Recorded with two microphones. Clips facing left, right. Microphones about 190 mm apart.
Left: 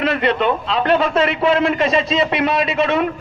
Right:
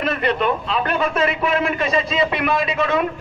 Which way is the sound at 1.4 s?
30° left (ahead or behind).